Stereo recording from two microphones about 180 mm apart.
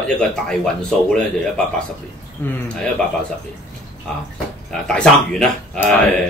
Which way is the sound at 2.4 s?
10° left (ahead or behind).